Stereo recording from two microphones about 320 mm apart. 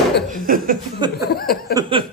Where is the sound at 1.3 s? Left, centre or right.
Left.